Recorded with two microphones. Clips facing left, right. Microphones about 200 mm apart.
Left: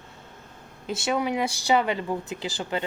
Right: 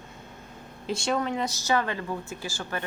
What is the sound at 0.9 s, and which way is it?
Speech, 5° left (ahead or behind).